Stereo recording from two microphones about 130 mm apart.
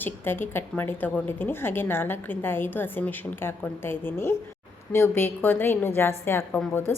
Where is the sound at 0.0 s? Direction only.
15° left (ahead or behind).